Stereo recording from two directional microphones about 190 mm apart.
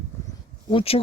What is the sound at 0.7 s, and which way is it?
Speech, 30° left (ahead or behind).